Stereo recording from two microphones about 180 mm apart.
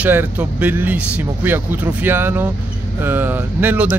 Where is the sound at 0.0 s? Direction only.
10° right (ahead or behind).